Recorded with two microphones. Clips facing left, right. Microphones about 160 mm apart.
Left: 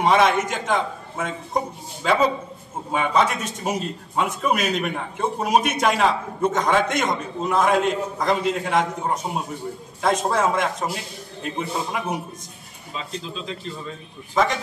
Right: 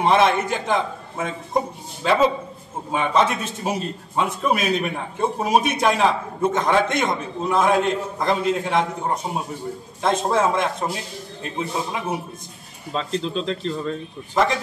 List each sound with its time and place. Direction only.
0.0 s a man's voice: centre (ahead or behind)
12.9 s speech: 65° right (ahead or behind)
14.3 s a man's voice: centre (ahead or behind)